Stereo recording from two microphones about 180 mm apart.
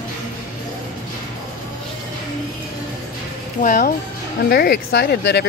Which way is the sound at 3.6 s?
50° left (ahead or behind).